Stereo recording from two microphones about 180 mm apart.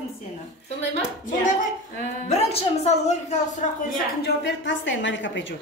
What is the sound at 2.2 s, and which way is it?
A woman's voice, 35° left (ahead or behind).